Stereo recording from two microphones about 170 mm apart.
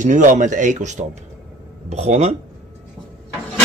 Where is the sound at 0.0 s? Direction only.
45° right (ahead or behind).